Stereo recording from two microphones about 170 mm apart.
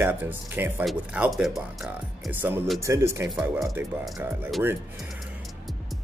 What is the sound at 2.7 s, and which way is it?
Speech, 15° right (ahead or behind).